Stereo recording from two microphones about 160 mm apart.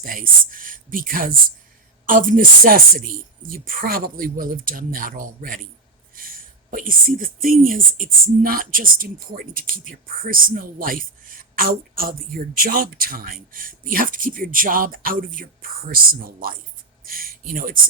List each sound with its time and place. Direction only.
0.0 s speech: 60° right (ahead or behind)